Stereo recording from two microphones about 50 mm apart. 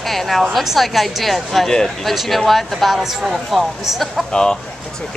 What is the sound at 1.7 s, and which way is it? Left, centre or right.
Speech, centre.